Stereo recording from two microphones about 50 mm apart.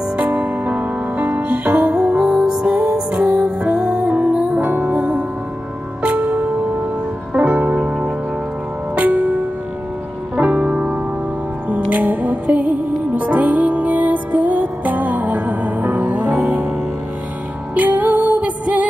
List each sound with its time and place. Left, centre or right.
0.2 s music: right
17.7 s music: right